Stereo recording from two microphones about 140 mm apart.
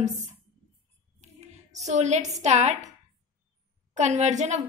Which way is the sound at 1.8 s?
55° right (ahead or behind).